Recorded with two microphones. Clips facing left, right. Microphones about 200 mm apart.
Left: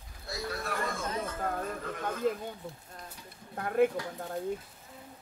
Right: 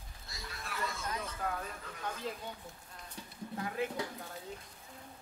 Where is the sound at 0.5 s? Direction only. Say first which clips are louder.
Left 5 dB; 45° left (ahead or behind).